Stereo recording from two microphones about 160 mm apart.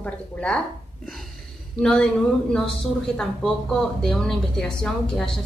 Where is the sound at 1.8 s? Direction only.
5° left (ahead or behind).